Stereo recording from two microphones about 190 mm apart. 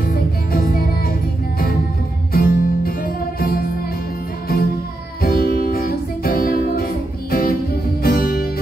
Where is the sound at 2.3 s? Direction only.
50° left (ahead or behind).